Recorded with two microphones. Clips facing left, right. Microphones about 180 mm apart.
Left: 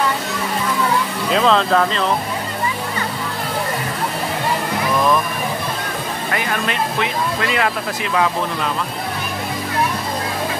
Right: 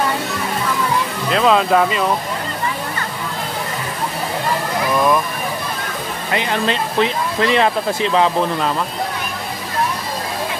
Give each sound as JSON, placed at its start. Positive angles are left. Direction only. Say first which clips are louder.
{"t": 1.3, "sound": "speech", "louder": "right 1 dB", "side_deg": -5}
{"t": 6.3, "sound": "speech", "louder": "right 4 dB", "side_deg": -25}